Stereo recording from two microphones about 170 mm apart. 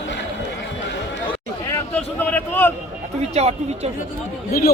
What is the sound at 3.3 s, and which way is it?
Speech, 40° right (ahead or behind).